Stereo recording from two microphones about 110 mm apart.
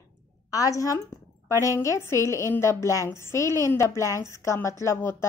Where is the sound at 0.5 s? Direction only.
30° left (ahead or behind).